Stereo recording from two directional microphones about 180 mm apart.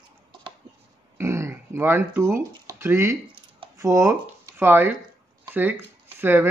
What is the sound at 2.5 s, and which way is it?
Speech, 20° right (ahead or behind).